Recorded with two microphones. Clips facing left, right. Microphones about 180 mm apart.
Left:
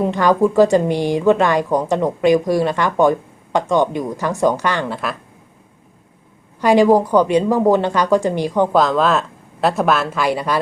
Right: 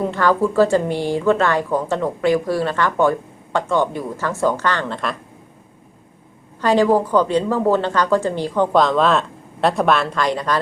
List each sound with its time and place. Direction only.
0.0 s a woman's voice: 15° left (ahead or behind)
6.6 s a woman's voice: 15° left (ahead or behind)
8.7 s speech: centre (ahead or behind)